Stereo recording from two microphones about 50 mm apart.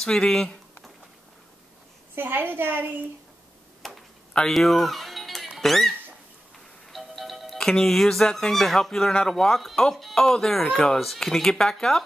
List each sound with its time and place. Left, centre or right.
0.0 s a sound: centre
2.1 s a woman's voice: right
3.8 s tick-tock: centre
4.3 s speech: centre
4.6 s music: centre
5.6 s a sound: centre
6.9 s music: centre
7.6 s speech: centre